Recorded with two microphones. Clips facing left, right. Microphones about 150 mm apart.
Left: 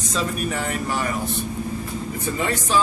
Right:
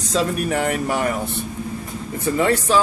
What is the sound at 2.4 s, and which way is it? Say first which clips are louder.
Speech: right 7 dB; 65° right (ahead or behind).